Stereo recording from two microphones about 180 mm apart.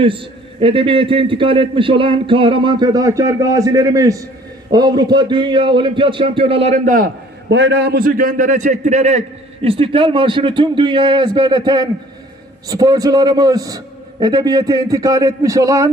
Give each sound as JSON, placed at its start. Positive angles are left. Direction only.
{"t": 0.0, "sound": "a man's voice", "side_deg": -30}
{"t": 7.5, "sound": "a man's voice", "side_deg": -75}